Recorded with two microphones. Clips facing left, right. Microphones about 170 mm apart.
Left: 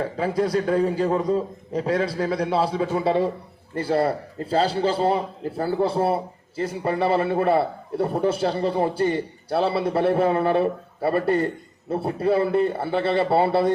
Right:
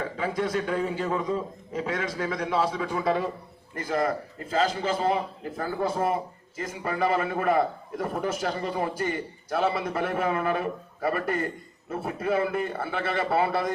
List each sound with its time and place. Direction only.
0.0 s a man's voice: 35° left (ahead or behind)